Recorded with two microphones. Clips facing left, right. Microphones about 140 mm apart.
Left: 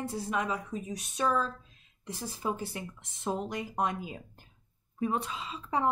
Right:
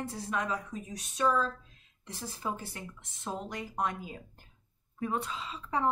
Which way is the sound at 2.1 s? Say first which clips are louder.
Left 3 dB; 15° left (ahead or behind).